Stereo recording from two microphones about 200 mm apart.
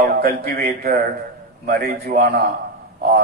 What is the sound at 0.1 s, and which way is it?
A man's voice, 50° right (ahead or behind).